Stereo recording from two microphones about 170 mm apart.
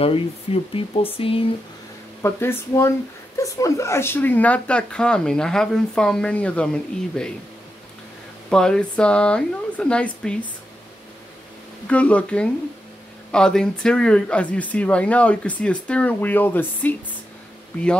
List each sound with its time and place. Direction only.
0.0 s speech: 35° left (ahead or behind)
2.2 s speech: 15° left (ahead or behind)
8.5 s speech: 5° left (ahead or behind)
11.9 s speech: 10° left (ahead or behind)